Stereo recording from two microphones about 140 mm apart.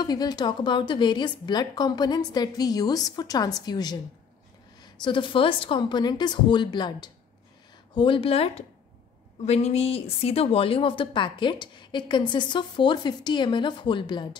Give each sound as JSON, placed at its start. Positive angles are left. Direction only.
{"t": 0.0, "sound": "a woman's voice", "side_deg": 30}